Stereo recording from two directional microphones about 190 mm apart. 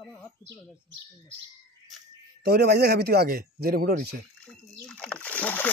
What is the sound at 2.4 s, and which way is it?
A man's voice, 55° right (ahead or behind).